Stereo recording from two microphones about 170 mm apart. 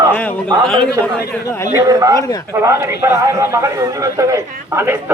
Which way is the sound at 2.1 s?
20° left (ahead or behind).